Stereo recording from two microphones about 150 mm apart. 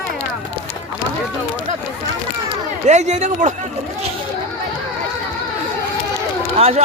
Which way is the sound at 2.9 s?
50° right (ahead or behind).